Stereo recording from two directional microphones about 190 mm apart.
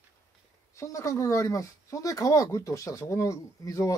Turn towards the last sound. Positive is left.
turn(degrees=15)  # may be behind; listen again after turning